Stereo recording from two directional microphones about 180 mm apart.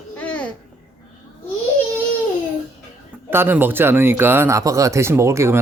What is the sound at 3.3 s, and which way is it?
Speech, 10° right (ahead or behind).